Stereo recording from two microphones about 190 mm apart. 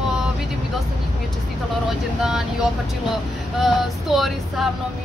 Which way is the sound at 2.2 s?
5° right (ahead or behind).